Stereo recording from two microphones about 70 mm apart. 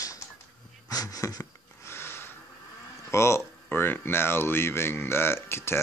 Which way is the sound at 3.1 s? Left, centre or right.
Left.